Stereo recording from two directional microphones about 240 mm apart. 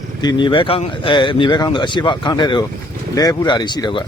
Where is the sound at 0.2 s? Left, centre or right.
Centre.